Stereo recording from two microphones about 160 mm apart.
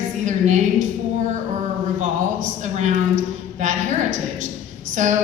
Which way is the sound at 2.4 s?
50° right (ahead or behind).